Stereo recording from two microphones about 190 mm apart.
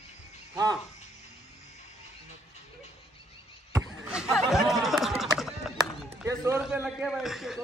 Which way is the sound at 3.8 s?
5° right (ahead or behind).